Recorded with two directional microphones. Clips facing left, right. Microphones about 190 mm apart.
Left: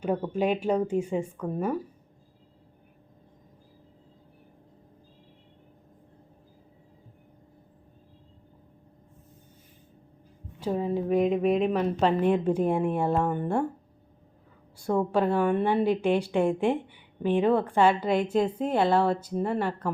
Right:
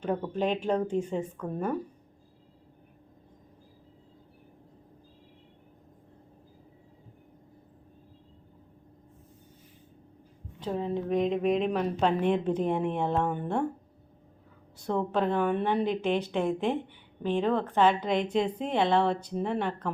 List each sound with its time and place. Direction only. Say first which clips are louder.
0.0 s a woman's voice: left 2 dB; 10° left (ahead or behind)
10.6 s a woman's voice: left 3 dB; 10° left (ahead or behind)
14.8 s a woman's voice: left 3 dB; 10° left (ahead or behind)